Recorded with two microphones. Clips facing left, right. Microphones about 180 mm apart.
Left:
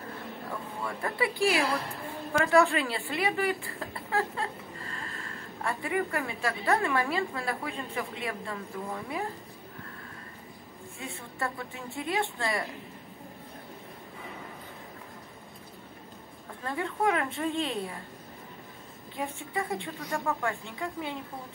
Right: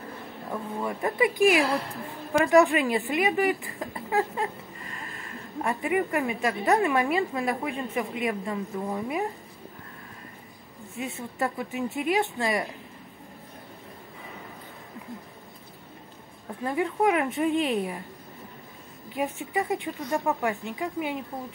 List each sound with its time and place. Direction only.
0.8 s speech: 15° right (ahead or behind)
11.0 s speech: 20° right (ahead or behind)
16.6 s speech: 15° right (ahead or behind)
19.1 s speech: 20° right (ahead or behind)